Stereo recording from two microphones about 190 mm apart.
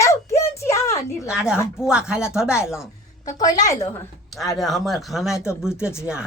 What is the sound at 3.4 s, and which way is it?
Speech, 20° left (ahead or behind).